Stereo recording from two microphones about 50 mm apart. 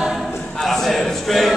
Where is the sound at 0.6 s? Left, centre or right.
Centre.